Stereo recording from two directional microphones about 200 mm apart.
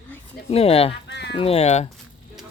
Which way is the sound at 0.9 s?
60° left (ahead or behind).